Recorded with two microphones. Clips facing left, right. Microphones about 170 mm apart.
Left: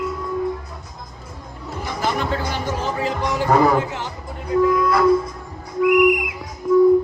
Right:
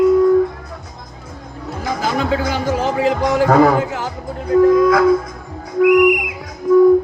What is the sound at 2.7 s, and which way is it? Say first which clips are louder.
Speech: right 8 dB; 90° right.